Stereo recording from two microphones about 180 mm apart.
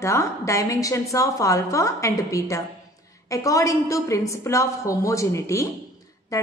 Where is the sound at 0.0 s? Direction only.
15° left (ahead or behind).